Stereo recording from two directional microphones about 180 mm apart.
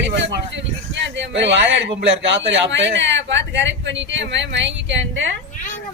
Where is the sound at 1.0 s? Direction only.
80° right.